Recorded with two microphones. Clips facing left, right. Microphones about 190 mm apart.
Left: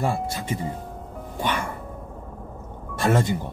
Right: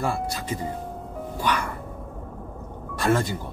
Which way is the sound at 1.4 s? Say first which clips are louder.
Even; 25° left (ahead or behind).